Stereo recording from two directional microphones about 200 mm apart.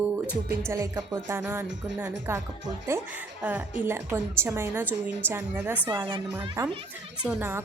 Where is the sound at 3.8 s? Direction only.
10° right (ahead or behind).